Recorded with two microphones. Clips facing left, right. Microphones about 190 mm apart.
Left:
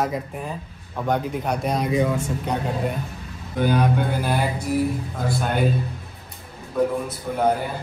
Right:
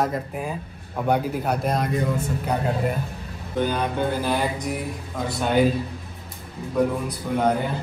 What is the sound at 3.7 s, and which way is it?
Speech, 15° left (ahead or behind).